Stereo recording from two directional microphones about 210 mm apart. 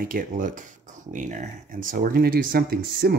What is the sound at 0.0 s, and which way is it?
Speech, 40° right (ahead or behind).